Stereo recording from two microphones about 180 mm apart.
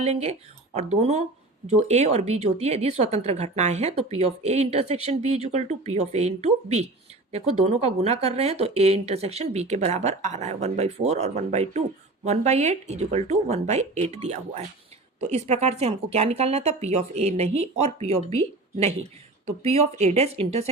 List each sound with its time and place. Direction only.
0.0 s a woman's voice: 35° right (ahead or behind)
19.6 s a woman's voice: 35° right (ahead or behind)